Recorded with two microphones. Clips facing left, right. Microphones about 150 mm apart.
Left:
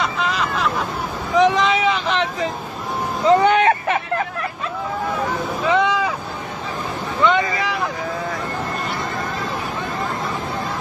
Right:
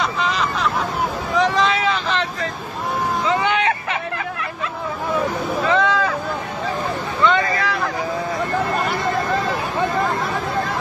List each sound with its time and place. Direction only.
0.2 s hubbub: centre (ahead or behind)
1.3 s boat: 15° left (ahead or behind)
3.3 s vehicle: 45° left (ahead or behind)
5.8 s vehicle: 15° left (ahead or behind)
7.2 s vehicle: 15° left (ahead or behind)